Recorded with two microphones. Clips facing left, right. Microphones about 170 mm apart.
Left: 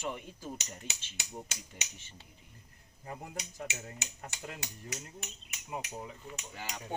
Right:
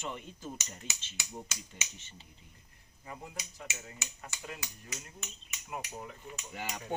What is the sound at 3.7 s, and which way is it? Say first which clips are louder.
Hammer: left 2 dB; 65° left (ahead or behind).